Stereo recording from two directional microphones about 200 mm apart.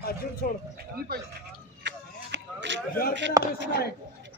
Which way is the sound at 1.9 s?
65° right (ahead or behind).